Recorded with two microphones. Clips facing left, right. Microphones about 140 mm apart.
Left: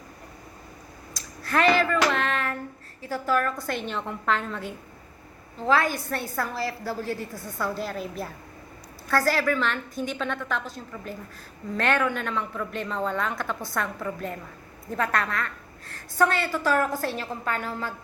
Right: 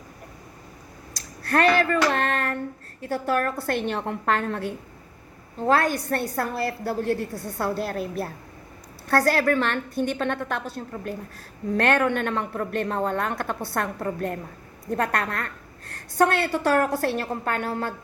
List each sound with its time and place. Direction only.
1.4 s a woman's voice: 60° right (ahead or behind)